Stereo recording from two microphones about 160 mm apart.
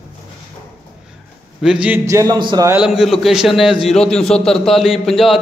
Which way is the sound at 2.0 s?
20° right (ahead or behind).